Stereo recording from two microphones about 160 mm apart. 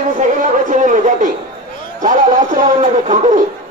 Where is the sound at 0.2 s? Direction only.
50° right (ahead or behind).